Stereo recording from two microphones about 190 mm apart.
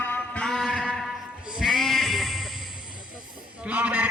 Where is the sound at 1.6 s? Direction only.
Centre (ahead or behind).